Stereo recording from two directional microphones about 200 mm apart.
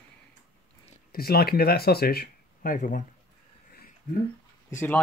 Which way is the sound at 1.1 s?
50° left (ahead or behind).